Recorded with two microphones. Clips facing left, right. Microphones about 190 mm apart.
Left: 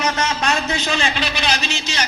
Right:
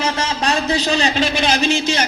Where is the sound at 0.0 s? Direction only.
30° right (ahead or behind).